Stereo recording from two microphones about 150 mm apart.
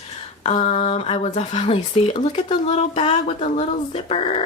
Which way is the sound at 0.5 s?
40° left (ahead or behind).